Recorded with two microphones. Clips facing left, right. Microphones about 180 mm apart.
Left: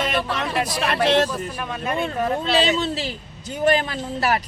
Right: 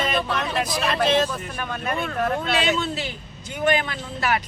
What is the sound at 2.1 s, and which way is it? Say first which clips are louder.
Speech: right 1 dB; 10° left (ahead or behind).